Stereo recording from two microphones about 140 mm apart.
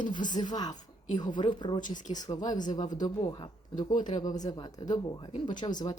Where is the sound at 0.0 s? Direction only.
35° left (ahead or behind).